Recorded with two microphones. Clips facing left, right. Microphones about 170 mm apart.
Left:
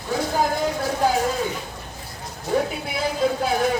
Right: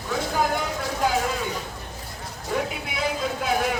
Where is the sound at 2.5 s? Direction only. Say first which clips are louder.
Left 4 dB; 35° left (ahead or behind).